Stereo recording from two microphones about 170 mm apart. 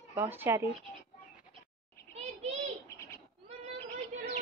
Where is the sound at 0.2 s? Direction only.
10° right (ahead or behind).